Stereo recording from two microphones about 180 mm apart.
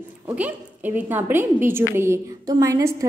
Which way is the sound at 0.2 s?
10° right (ahead or behind).